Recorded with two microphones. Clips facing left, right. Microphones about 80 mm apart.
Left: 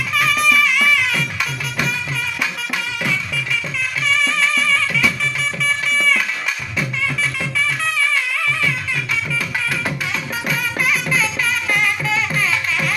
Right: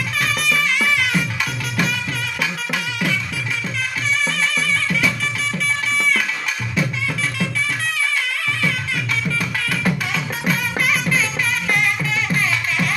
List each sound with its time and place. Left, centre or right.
0.3 s music: right